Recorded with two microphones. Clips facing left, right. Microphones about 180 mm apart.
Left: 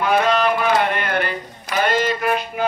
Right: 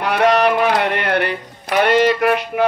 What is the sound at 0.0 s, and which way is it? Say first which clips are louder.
Speech: right 3 dB; 70° right (ahead or behind).